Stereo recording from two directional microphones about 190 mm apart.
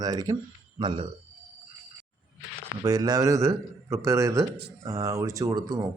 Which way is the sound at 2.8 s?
20° right (ahead or behind).